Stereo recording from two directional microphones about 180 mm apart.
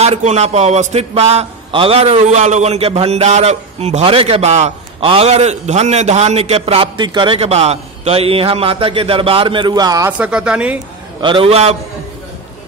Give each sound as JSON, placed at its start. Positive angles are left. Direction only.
{"t": 0.0, "sound": "a man's voice", "side_deg": -35}
{"t": 10.1, "sound": "a woman's voice", "side_deg": -5}
{"t": 11.1, "sound": "a man's voice", "side_deg": -25}